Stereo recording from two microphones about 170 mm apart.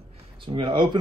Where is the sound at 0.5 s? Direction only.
30° right (ahead or behind).